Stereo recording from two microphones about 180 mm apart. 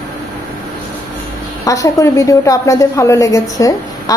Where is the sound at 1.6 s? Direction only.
20° left (ahead or behind).